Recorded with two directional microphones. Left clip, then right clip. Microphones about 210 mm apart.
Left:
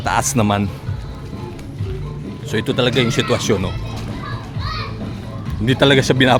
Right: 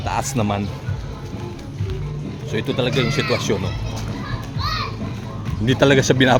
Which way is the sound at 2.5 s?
30° left (ahead or behind).